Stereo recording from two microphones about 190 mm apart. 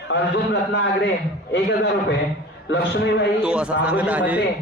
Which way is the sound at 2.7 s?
65° left (ahead or behind).